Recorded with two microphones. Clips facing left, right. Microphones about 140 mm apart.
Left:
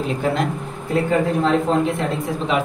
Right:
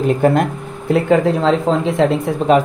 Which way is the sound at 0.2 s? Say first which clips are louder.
Right 6 dB; 55° right (ahead or behind).